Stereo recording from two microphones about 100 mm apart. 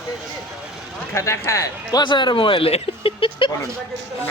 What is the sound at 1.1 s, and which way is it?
Speech, 30° left (ahead or behind).